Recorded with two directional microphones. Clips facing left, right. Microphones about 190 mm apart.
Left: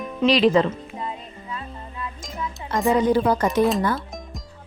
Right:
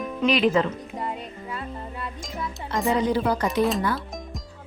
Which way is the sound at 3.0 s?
50° left (ahead or behind).